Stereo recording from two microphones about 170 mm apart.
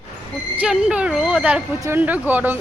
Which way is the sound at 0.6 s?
5° right (ahead or behind).